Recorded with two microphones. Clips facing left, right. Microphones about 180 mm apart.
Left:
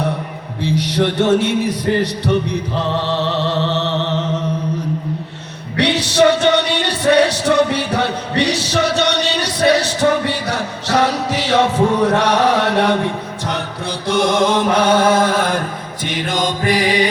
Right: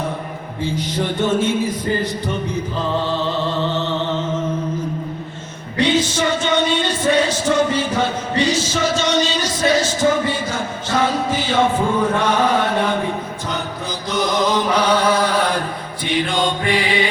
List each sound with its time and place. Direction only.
0.6 s a sound: 75° left (ahead or behind)
5.7 s music: 70° left (ahead or behind)
14.1 s mantra: 75° left (ahead or behind)
14.5 s chant: 50° left (ahead or behind)
16.0 s mantra: 45° left (ahead or behind)